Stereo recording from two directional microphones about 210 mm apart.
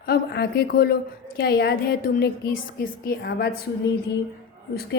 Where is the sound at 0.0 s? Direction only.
45° left (ahead or behind).